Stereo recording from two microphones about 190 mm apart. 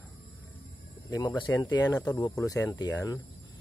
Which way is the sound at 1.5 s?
15° left (ahead or behind).